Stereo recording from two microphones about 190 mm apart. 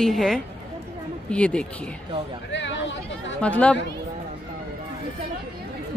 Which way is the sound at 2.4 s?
70° left (ahead or behind).